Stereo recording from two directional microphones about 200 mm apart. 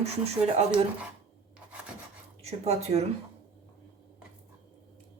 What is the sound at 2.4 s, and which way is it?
Speech, 30° right (ahead or behind).